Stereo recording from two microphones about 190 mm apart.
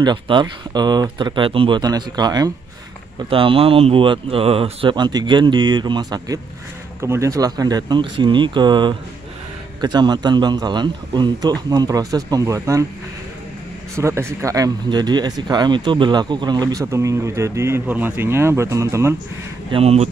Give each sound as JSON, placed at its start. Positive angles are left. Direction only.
{"t": 0.0, "sound": "speech", "side_deg": -25}
{"t": 13.9, "sound": "speech", "side_deg": -15}
{"t": 19.7, "sound": "speech", "side_deg": -35}